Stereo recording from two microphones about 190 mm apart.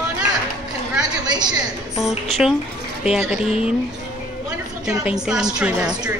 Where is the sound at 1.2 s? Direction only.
20° right (ahead or behind).